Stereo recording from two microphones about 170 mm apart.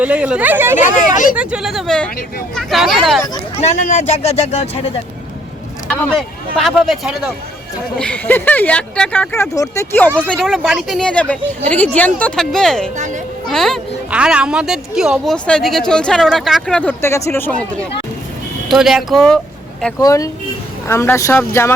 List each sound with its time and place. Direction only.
0.0 s speech: 5° right (ahead or behind)
3.6 s speech: 45° left (ahead or behind)
6.1 s speech: centre (ahead or behind)
9.3 s speech: 15° left (ahead or behind)
10.2 s speech: 5° left (ahead or behind)
13.0 s a child's voice: 45° right (ahead or behind)
13.5 s speech: centre (ahead or behind)
20.0 s speech: 20° left (ahead or behind)